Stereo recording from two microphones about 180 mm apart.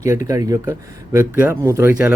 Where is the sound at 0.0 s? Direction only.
15° right (ahead or behind).